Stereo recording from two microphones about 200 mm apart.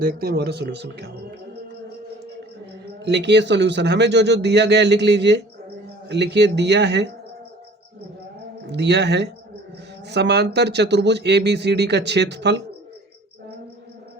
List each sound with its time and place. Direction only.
0.0 s speech: 50° right (ahead or behind)
3.0 s speech: 60° right (ahead or behind)
8.6 s speech: 60° right (ahead or behind)